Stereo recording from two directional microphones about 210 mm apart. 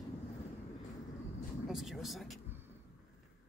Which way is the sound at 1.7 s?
Centre (ahead or behind).